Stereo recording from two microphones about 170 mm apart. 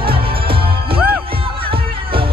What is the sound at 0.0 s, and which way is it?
Music, 30° right (ahead or behind).